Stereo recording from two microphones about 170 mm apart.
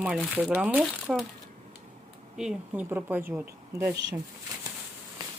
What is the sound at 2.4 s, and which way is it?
Speech, 10° right (ahead or behind).